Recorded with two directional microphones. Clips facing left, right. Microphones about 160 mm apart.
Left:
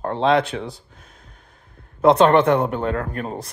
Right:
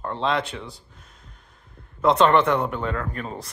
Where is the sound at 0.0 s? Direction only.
60° left (ahead or behind).